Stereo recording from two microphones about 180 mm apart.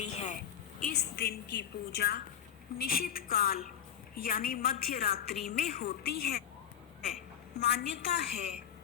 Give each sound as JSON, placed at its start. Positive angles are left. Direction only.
{"t": 0.0, "sound": "a sound", "side_deg": 40}
{"t": 0.8, "sound": "a woman's voice", "side_deg": 60}
{"t": 7.6, "sound": "a woman's voice", "side_deg": 70}